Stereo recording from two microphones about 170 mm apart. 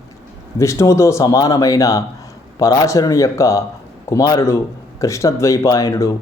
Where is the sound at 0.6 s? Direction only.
15° left (ahead or behind).